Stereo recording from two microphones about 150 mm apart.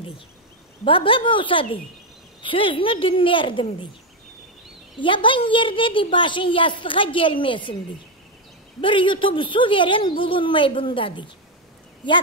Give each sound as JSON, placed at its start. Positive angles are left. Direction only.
{"t": 0.8, "sound": "a child's voice", "side_deg": 35}
{"t": 4.9, "sound": "a child's voice", "side_deg": 35}
{"t": 8.8, "sound": "a child's voice", "side_deg": 35}